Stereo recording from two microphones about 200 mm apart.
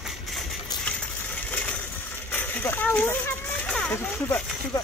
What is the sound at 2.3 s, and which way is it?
Speech, 10° left (ahead or behind).